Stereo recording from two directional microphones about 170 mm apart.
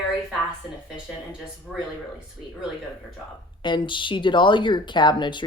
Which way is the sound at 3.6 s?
30° left (ahead or behind).